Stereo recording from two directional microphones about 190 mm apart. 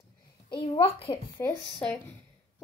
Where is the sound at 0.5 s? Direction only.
30° left (ahead or behind).